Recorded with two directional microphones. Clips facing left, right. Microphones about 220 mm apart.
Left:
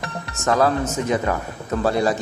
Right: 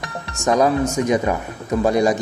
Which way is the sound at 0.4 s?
15° right (ahead or behind).